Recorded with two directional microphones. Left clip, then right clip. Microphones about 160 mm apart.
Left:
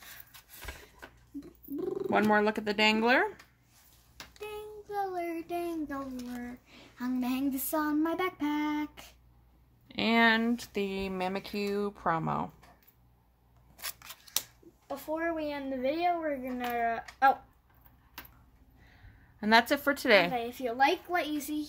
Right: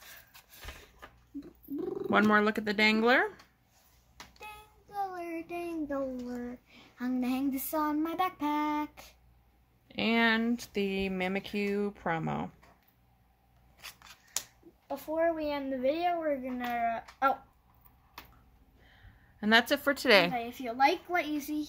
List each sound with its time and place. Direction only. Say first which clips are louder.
1.8 s purr: left 2 dB; 5° left (ahead or behind)
2.0 s child singing: right 1 dB; 25° right (ahead or behind)
4.5 s child singing: left 12 dB; 15° right (ahead or behind)
9.8 s speech: left 2 dB; 5° left (ahead or behind)
14.9 s a child's voice: right 3 dB; centre (ahead or behind)
19.4 s speech: left 1 dB; 5° right (ahead or behind)
20.3 s a child's voice: left 2 dB; centre (ahead or behind)